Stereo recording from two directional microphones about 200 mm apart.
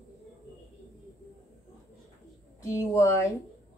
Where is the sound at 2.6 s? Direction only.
15° left (ahead or behind).